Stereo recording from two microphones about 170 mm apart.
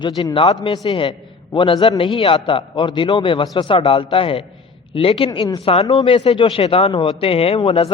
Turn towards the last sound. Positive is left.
turn(degrees=30)  # may be behind; listen again after turning